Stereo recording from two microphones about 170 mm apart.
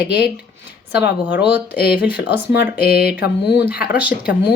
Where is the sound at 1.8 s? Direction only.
70° left (ahead or behind).